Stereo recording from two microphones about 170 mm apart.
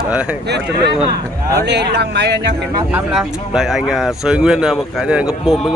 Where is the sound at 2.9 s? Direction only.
5° right (ahead or behind).